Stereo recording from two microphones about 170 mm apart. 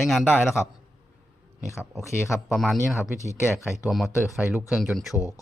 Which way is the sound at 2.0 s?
15° left (ahead or behind).